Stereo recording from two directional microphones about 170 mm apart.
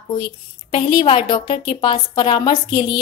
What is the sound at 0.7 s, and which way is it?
A woman's voice, 30° left (ahead or behind).